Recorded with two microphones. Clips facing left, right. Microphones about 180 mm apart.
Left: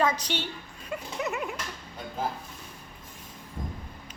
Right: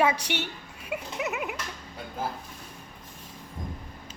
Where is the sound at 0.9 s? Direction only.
5° right (ahead or behind).